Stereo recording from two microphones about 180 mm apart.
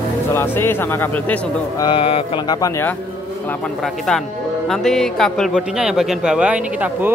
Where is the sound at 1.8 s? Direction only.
30° left (ahead or behind).